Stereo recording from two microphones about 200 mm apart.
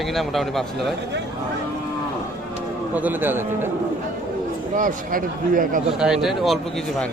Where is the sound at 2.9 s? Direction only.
10° right (ahead or behind).